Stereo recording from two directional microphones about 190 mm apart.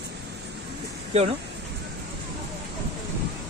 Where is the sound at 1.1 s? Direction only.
35° right (ahead or behind).